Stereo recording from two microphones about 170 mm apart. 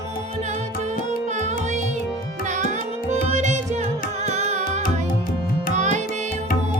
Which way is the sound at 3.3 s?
45° right (ahead or behind).